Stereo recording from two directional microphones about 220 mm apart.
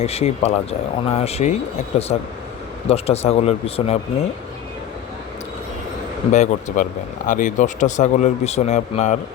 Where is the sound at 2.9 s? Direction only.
30° left (ahead or behind).